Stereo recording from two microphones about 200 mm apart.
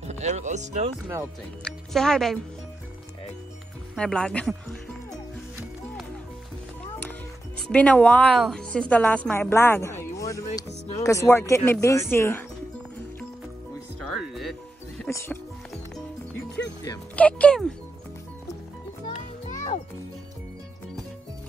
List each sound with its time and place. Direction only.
0.1 s speech: 35° right (ahead or behind)
1.0 s speech: 10° right (ahead or behind)
1.6 s speech: centre (ahead or behind)
3.9 s speech: 5° left (ahead or behind)
7.7 s a woman's voice: 5° left (ahead or behind)
14.1 s music: centre (ahead or behind)
15.0 s a woman's voice: 15° left (ahead or behind)
16.6 s speech: 15° left (ahead or behind)
17.1 s speech: 5° left (ahead or behind)